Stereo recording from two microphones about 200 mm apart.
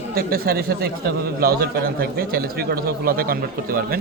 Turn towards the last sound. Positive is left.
turn(degrees=-45)  # may be behind; listen again after turning